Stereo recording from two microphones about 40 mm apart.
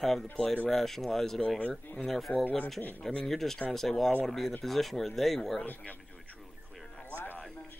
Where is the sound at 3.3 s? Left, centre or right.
Centre.